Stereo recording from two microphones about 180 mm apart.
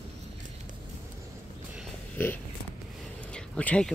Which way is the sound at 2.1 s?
10° left (ahead or behind).